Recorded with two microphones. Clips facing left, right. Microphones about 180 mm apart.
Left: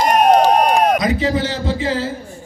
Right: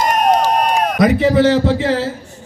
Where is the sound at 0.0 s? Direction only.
60° left (ahead or behind).